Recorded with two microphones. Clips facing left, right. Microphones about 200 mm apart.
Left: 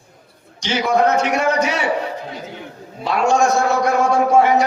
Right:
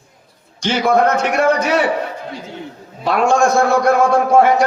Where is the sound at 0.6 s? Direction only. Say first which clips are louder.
Right 2 dB; 55° right (ahead or behind).